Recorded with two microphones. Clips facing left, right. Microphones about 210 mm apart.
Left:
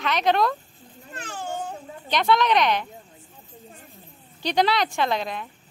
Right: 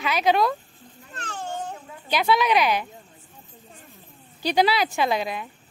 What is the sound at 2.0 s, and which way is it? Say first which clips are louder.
Speech: even; 5° right (ahead or behind).